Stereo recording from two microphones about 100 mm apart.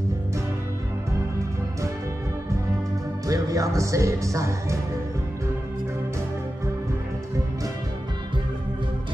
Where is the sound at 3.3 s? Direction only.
35° right (ahead or behind).